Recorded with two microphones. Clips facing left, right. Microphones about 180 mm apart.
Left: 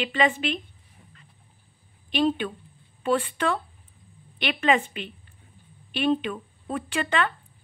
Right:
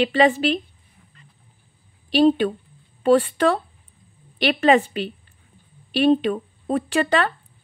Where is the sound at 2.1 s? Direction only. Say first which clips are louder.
Right 8 dB; 35° right (ahead or behind).